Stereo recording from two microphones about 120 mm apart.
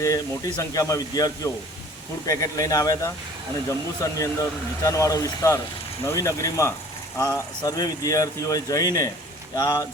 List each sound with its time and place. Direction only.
0.0 s speech: 30° left (ahead or behind)